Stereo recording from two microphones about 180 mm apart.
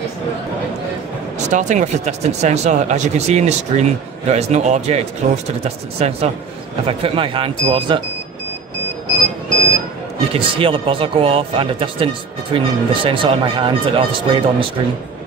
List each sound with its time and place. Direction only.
1.5 s speech: 40° right (ahead or behind)
10.3 s speech: 30° right (ahead or behind)